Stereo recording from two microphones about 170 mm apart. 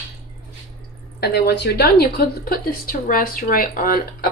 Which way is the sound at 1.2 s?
70° left (ahead or behind).